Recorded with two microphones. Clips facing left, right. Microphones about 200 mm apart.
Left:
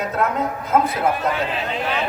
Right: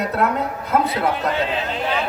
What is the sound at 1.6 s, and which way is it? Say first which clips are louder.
Speech: even; centre (ahead or behind).